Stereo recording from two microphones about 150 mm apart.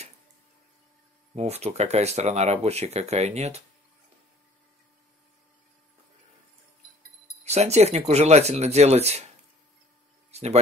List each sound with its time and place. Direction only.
1.3 s speech: 45° right (ahead or behind)
7.4 s speech: 45° right (ahead or behind)
10.3 s speech: 45° right (ahead or behind)